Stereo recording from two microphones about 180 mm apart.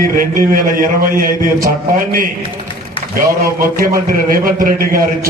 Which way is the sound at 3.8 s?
55° right (ahead or behind).